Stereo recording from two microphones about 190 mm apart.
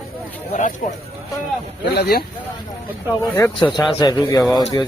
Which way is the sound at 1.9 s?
60° left (ahead or behind).